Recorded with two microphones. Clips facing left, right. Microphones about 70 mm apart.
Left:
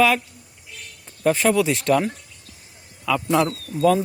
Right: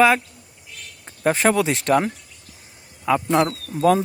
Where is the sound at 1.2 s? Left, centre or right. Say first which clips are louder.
Even; right.